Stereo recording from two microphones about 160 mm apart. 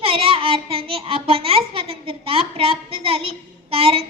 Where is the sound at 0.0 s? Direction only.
35° right (ahead or behind).